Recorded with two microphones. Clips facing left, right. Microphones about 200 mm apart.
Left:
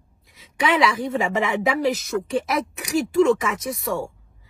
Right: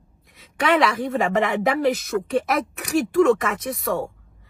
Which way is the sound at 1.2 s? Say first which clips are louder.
Right 3 dB; 55° right (ahead or behind).